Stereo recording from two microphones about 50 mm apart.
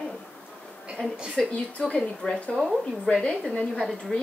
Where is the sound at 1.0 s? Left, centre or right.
Left.